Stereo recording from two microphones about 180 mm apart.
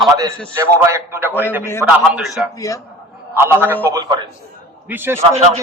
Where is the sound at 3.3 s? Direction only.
15° right (ahead or behind).